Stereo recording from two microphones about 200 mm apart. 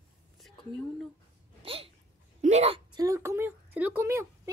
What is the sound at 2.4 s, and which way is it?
Speech, 35° right (ahead or behind).